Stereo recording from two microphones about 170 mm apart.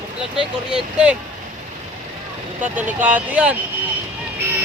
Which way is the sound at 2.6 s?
10° right (ahead or behind).